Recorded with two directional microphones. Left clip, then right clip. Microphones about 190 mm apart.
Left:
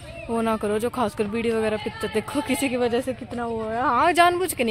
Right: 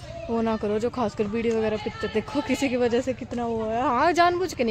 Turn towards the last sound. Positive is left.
turn(degrees=0)  # may be behind; listen again after turning